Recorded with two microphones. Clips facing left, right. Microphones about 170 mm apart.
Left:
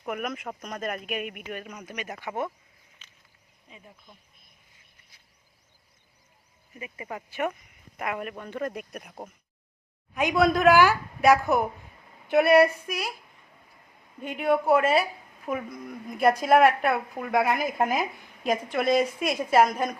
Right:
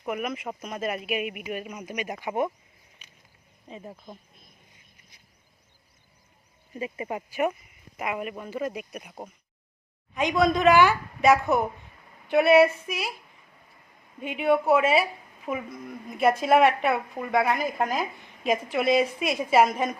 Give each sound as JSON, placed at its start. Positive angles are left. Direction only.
{"t": 0.0, "sound": "speech", "side_deg": 0}
{"t": 3.0, "sound": "a sound", "side_deg": -10}
{"t": 3.7, "sound": "speech", "side_deg": -40}
{"t": 6.7, "sound": "speech", "side_deg": -25}
{"t": 14.2, "sound": "speech", "side_deg": -5}
{"t": 18.4, "sound": "speech", "side_deg": -5}